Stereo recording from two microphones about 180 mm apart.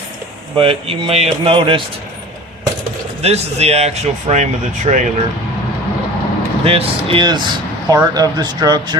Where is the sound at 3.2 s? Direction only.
35° right (ahead or behind).